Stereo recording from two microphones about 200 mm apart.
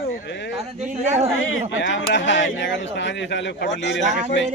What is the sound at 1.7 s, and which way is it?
Speech, 70° left (ahead or behind).